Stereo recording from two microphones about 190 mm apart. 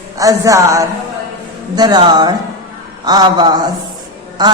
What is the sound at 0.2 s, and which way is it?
A man's voice, 15° right (ahead or behind).